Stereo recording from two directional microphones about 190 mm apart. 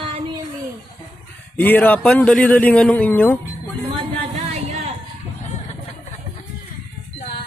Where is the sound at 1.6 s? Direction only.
10° left (ahead or behind).